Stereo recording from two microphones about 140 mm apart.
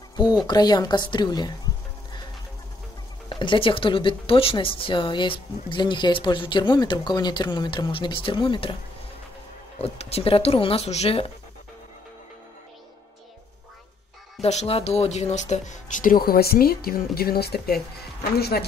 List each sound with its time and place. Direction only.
0.1 s a sound: 30° left (ahead or behind)
0.5 s a woman's voice: 30° left (ahead or behind)
3.3 s a woman's voice: 35° left (ahead or behind)
9.8 s speech: 45° left (ahead or behind)
14.4 s speech: 50° left (ahead or behind); by 17.7 s 90° left